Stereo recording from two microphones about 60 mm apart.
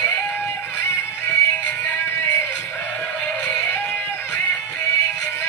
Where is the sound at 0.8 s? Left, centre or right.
Left.